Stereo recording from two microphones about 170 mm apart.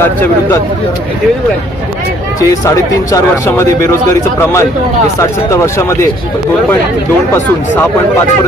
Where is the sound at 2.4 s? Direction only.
20° left (ahead or behind).